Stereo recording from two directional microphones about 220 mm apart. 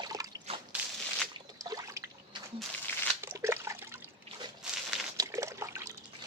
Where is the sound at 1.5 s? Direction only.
15° right (ahead or behind).